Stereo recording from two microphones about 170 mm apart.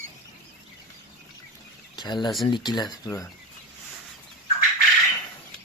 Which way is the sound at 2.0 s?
25° left (ahead or behind).